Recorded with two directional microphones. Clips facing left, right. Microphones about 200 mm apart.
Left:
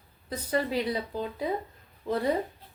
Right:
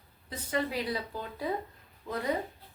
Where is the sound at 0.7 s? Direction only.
20° left (ahead or behind).